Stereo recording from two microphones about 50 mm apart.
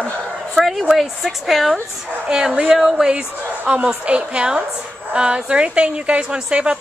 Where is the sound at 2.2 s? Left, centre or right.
Centre.